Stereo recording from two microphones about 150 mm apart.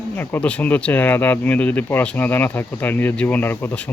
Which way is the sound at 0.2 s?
10° left (ahead or behind).